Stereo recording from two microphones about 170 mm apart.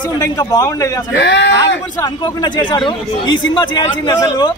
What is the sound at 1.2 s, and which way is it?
Speech, 90° left.